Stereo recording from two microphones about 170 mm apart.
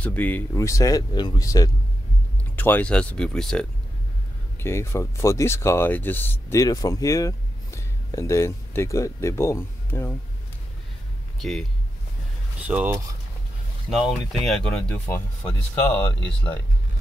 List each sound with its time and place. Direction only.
0.0 s speech: 10° left (ahead or behind)
4.6 s speech: 15° left (ahead or behind)
11.3 s speech: centre (ahead or behind)
12.6 s speech: 10° right (ahead or behind); by 16.6 s 10° left (ahead or behind)